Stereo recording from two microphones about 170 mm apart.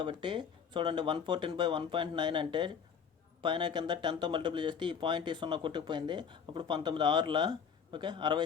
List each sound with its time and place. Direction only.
0.0 s speech: 30° right (ahead or behind)